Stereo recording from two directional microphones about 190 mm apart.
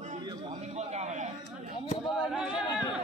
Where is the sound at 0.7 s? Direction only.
35° right (ahead or behind).